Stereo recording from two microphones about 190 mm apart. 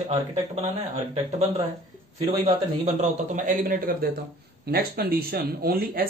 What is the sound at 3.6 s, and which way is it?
Speech, 50° right (ahead or behind).